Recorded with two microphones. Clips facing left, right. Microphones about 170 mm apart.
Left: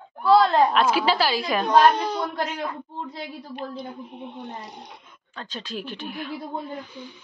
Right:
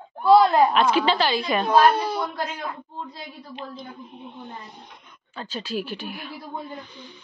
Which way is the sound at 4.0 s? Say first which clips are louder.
Left 3 dB; 70° left (ahead or behind).